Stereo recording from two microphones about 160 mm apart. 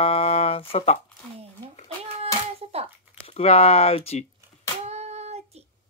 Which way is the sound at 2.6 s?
40° right (ahead or behind).